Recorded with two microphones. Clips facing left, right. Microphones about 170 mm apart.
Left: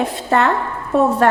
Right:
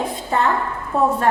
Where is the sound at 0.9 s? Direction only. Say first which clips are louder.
Left 3 dB; 85° left.